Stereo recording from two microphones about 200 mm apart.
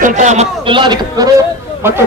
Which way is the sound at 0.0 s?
35° right (ahead or behind).